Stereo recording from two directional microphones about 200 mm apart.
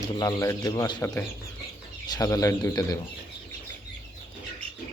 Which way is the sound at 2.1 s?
20° left (ahead or behind).